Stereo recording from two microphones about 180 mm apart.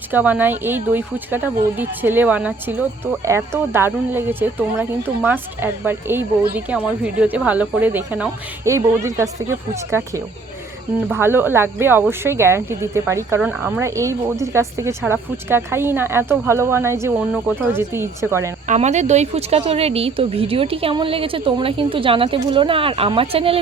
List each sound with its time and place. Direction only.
0.1 s speech: 10° right (ahead or behind)
18.6 s speech: 40° right (ahead or behind)